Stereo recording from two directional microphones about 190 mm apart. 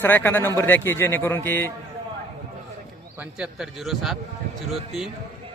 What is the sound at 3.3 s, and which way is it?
Speech, 5° right (ahead or behind).